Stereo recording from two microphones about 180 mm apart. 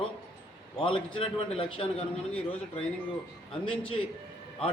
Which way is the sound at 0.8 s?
30° left (ahead or behind).